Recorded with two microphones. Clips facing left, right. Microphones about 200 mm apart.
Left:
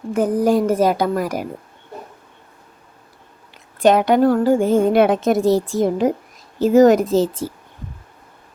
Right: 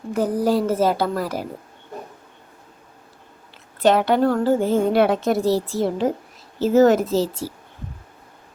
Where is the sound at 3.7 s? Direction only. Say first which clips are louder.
Left 3 dB; 15° left (ahead or behind).